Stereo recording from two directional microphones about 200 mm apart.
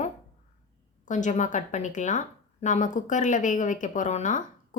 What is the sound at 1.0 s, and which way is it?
A woman's voice, 40° left (ahead or behind).